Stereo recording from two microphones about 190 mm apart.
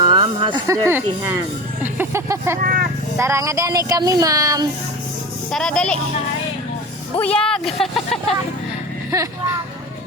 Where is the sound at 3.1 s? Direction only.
15° right (ahead or behind).